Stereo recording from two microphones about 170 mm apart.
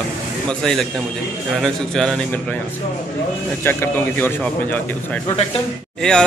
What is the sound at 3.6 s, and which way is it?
Speech, 15° left (ahead or behind).